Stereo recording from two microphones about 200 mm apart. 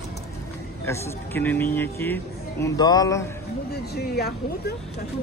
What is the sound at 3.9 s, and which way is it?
Speech, 55° left (ahead or behind).